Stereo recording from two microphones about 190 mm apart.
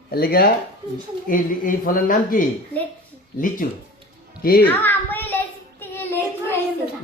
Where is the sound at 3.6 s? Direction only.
50° left (ahead or behind).